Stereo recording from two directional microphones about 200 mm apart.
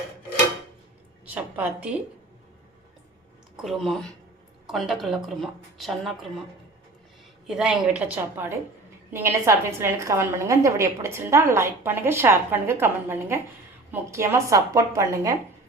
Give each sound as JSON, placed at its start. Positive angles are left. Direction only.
{"t": 1.2, "sound": "a woman's voice", "side_deg": -5}
{"t": 3.6, "sound": "a woman's voice", "side_deg": 0}
{"t": 7.4, "sound": "a woman's voice", "side_deg": 0}